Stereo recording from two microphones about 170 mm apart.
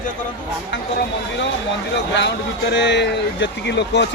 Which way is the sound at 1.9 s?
90° left.